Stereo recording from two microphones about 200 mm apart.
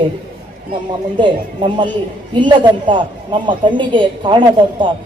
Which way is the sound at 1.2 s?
25° right (ahead or behind).